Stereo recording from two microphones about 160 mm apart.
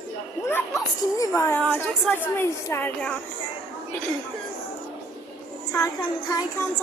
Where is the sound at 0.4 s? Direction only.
15° left (ahead or behind).